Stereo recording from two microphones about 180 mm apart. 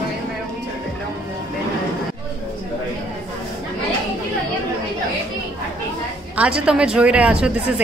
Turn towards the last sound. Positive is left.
turn(degrees=-5)  # may be behind; listen again after turning